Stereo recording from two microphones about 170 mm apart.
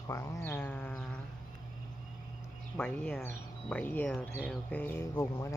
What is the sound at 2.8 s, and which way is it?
Speech, 10° left (ahead or behind).